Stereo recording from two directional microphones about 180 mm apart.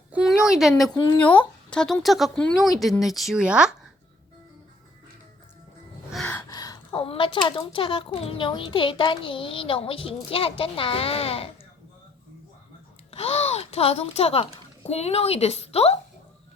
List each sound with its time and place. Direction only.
0.1 s a sound: 5° right (ahead or behind)
1.7 s speech: 5° left (ahead or behind)
6.1 s gasp: 5° left (ahead or behind)
6.5 s a child's voice: 20° left (ahead or behind)
13.1 s speech: 35° left (ahead or behind)